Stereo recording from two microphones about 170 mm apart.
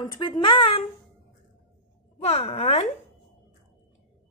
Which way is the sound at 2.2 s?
40° left (ahead or behind).